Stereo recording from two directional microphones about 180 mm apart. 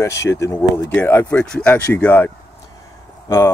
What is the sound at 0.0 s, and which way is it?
Speech, 15° left (ahead or behind).